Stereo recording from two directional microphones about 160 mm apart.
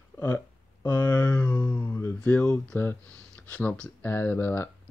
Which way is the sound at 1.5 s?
20° left (ahead or behind).